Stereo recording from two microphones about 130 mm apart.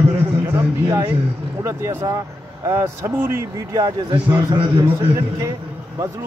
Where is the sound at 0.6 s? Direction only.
20° right (ahead or behind).